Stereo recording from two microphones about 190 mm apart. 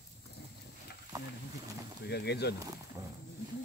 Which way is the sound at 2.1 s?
60° left (ahead or behind).